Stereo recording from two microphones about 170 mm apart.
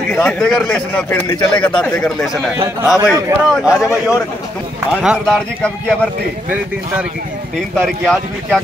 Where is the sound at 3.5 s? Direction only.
5° right (ahead or behind).